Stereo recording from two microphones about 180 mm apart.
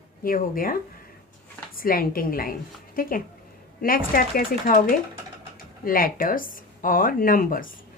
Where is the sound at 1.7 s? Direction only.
55° left (ahead or behind).